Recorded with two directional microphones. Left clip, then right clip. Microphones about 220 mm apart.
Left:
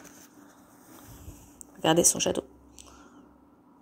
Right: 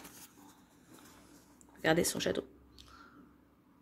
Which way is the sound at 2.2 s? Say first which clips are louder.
Left 6 dB; 10° left (ahead or behind).